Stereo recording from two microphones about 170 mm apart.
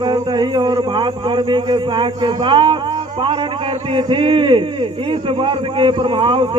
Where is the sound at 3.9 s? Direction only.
30° right (ahead or behind).